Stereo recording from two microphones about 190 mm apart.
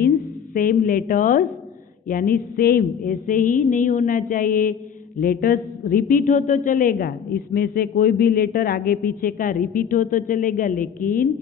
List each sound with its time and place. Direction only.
0.6 s a woman's voice: 50° left (ahead or behind)